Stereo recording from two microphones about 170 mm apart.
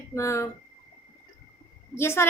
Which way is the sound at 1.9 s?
15° left (ahead or behind).